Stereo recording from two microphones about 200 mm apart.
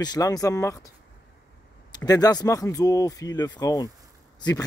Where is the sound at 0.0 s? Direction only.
20° left (ahead or behind).